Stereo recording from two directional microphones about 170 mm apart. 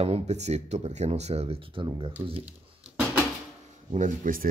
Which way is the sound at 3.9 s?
50° right (ahead or behind).